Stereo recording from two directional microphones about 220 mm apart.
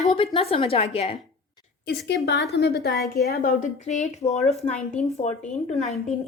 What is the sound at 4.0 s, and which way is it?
Speech, 30° left (ahead or behind).